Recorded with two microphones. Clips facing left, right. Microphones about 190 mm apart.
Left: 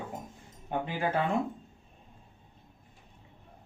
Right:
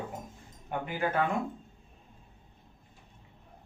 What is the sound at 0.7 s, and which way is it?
Speech, 25° left (ahead or behind).